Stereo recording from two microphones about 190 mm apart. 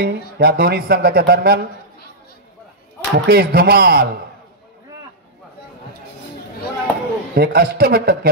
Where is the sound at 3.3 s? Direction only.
55° right (ahead or behind).